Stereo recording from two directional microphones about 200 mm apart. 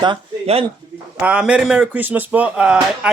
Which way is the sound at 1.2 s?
5° right (ahead or behind).